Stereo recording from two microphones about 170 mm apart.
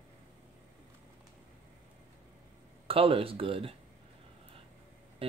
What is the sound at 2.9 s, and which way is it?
Speech, 35° right (ahead or behind).